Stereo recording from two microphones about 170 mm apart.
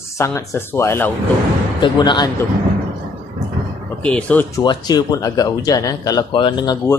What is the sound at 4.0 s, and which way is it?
Speech, 5° left (ahead or behind).